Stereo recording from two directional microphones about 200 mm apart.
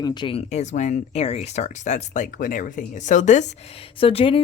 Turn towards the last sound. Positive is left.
turn(degrees=30)  # may be behind; listen again after turning